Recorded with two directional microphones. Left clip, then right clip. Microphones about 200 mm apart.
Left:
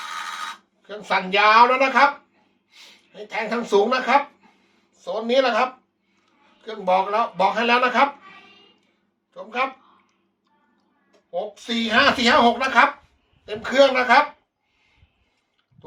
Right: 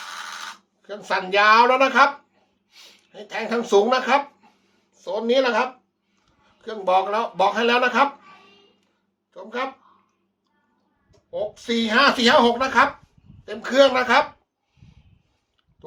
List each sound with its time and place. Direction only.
1.5 s speech: 55° right (ahead or behind)
9.3 s speech: 50° right (ahead or behind)
11.3 s a man's voice: 50° right (ahead or behind)